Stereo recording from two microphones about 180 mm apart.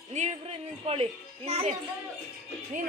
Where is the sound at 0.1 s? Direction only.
40° right (ahead or behind).